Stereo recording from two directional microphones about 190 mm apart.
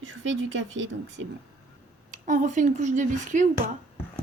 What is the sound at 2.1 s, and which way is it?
A woman's voice, 40° right (ahead or behind).